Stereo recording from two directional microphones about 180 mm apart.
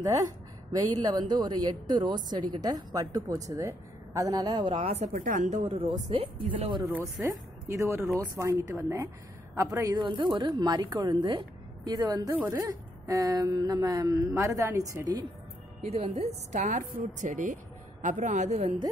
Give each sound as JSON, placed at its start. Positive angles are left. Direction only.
{"t": 0.0, "sound": "a woman's voice", "side_deg": -20}
{"t": 5.1, "sound": "speech", "side_deg": -50}
{"t": 6.9, "sound": "a woman's voice", "side_deg": -15}
{"t": 15.8, "sound": "a woman's voice", "side_deg": -35}